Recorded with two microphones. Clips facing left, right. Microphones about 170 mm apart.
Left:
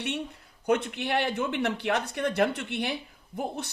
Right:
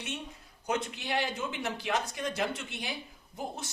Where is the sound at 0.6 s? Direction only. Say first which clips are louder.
Left 7 dB; 60° left (ahead or behind).